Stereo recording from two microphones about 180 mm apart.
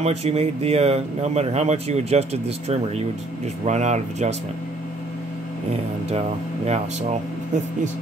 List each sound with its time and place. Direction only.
0.0 s speech: 35° right (ahead or behind)
5.7 s speech: 35° right (ahead or behind)